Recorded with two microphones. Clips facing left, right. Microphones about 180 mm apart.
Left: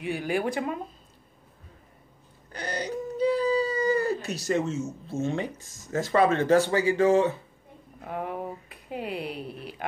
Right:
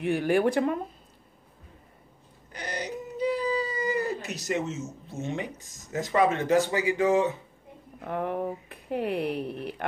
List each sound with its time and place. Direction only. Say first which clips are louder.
0.0 s speech: right 4 dB; 55° right (ahead or behind)
2.5 s a sound: left 3 dB; 15° right (ahead or behind)
4.2 s speech: left 3 dB; 20° right (ahead or behind)
8.0 s speech: right 3 dB; 55° right (ahead or behind)